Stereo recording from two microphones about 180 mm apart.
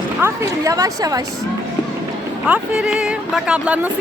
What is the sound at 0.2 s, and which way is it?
A woman's voice, 15° right (ahead or behind).